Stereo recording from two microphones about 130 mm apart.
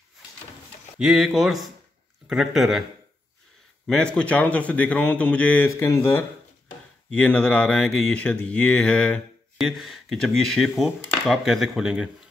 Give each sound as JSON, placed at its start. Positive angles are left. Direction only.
{"t": 0.9, "sound": "speech", "side_deg": 0}
{"t": 3.8, "sound": "speech", "side_deg": 5}
{"t": 5.7, "sound": "speech", "side_deg": 20}
{"t": 7.1, "sound": "speech", "side_deg": 10}